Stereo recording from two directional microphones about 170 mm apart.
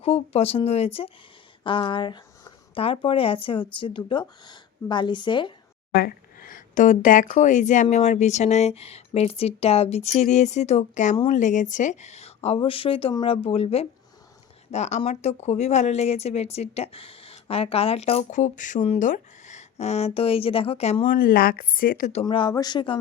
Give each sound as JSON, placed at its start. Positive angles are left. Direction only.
{"t": 0.0, "sound": "speech", "side_deg": 35}
{"t": 5.9, "sound": "speech", "side_deg": 60}
{"t": 21.1, "sound": "speech", "side_deg": 55}
{"t": 22.3, "sound": "speech", "side_deg": 30}